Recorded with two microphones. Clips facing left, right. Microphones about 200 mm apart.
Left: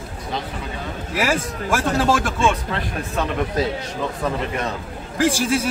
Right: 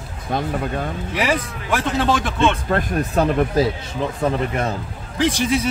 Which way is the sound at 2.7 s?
45° right (ahead or behind).